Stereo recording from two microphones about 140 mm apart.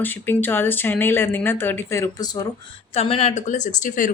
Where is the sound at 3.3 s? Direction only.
60° left (ahead or behind).